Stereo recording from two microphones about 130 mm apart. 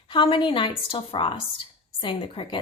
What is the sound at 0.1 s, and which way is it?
A woman's voice, 40° left (ahead or behind).